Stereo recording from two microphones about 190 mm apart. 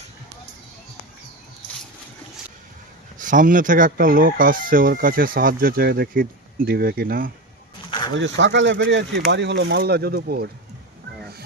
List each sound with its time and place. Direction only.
3.2 s speech: 45° right (ahead or behind)
7.9 s a sound: 25° left (ahead or behind)
8.1 s speech: 70° right (ahead or behind); by 10.5 s 55° right (ahead or behind)